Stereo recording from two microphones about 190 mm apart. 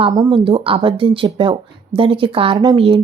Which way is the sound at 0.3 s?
25° right (ahead or behind).